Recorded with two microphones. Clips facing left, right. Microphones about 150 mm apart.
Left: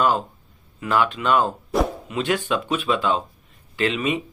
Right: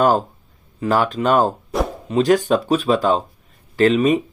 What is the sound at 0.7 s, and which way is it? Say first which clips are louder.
Speech: right 3 dB; 40° right (ahead or behind).